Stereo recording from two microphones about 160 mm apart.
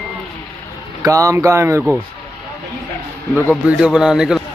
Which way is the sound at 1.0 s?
20° right (ahead or behind).